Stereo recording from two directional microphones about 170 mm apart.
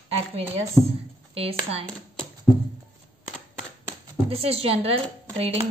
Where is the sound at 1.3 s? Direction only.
35° right (ahead or behind).